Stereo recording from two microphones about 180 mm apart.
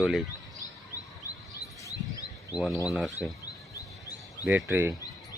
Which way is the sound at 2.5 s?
Centre (ahead or behind).